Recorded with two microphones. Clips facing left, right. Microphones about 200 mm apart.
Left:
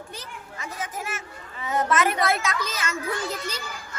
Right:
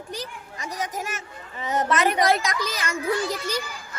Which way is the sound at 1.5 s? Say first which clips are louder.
Even; 20° right (ahead or behind).